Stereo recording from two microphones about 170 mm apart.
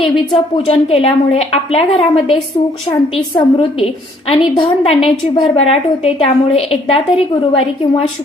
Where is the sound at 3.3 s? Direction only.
30° left (ahead or behind).